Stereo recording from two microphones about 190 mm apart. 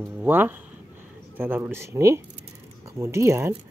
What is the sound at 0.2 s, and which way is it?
Speech, 10° right (ahead or behind).